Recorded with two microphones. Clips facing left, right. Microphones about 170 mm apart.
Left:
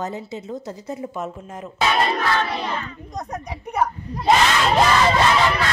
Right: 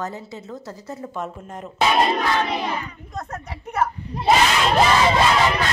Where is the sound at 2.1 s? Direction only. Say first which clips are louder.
Right 1 dB; 15° right (ahead or behind).